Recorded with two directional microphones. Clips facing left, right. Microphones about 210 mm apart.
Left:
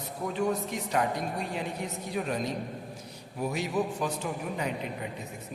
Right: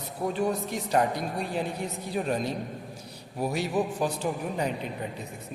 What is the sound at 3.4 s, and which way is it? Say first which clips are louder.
Speech: right 2 dB; 35° right (ahead or behind).